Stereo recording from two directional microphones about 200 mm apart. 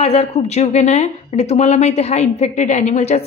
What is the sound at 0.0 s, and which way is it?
A woman's voice, 30° left (ahead or behind).